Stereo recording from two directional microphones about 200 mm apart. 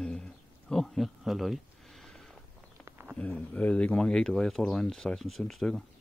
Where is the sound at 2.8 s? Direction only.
10° right (ahead or behind).